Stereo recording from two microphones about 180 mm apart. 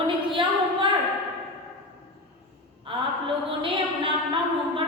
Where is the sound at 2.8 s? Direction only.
30° right (ahead or behind).